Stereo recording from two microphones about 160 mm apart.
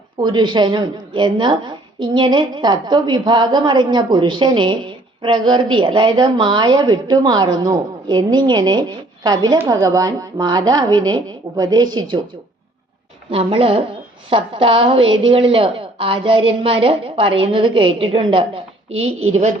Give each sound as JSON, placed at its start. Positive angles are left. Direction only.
{"t": 0.2, "sound": "a woman's voice", "side_deg": -30}
{"t": 13.3, "sound": "a woman's voice", "side_deg": -35}